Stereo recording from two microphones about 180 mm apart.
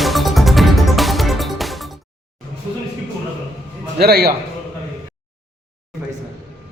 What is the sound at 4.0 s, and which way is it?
Speech, 60° right (ahead or behind).